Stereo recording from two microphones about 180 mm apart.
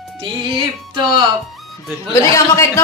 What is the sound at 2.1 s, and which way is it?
Speech, 15° left (ahead or behind).